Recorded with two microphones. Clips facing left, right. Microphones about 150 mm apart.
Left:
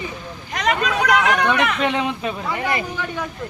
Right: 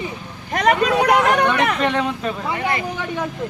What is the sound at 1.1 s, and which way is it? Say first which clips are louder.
Speech: right 2 dB; 35° right (ahead or behind).